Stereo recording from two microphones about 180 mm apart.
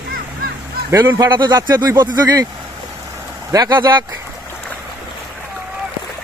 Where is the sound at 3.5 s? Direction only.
25° right (ahead or behind).